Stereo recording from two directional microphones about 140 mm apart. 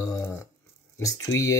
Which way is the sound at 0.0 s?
20° left (ahead or behind).